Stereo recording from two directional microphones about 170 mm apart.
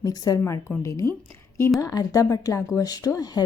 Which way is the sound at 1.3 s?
15° left (ahead or behind).